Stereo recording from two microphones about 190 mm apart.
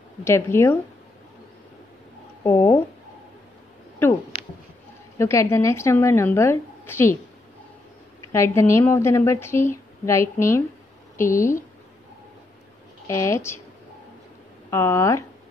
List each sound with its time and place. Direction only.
0.2 s a woman's voice: 15° left (ahead or behind)
2.4 s a woman's voice: 15° left (ahead or behind)
4.0 s a woman's voice: 10° left (ahead or behind)
8.3 s a woman's voice: 15° left (ahead or behind)
13.0 s a woman's voice: 15° left (ahead or behind)
14.7 s a woman's voice: 15° left (ahead or behind)